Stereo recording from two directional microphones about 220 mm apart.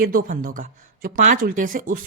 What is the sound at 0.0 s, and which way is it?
Speech, 40° right (ahead or behind).